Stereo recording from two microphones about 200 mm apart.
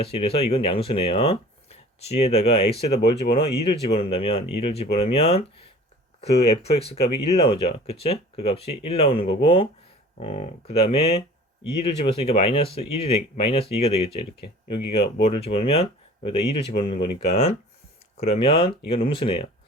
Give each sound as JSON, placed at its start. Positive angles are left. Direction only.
{"t": 0.0, "sound": "speech", "side_deg": 30}